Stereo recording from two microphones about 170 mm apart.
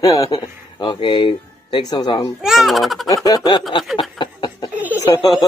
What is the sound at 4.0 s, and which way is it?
Chuckle, 25° left (ahead or behind).